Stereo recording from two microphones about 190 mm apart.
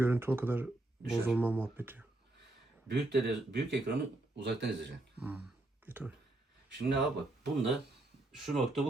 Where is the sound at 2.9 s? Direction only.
65° right (ahead or behind).